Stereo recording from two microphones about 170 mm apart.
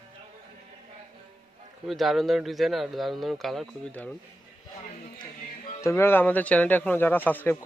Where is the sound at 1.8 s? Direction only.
Centre (ahead or behind).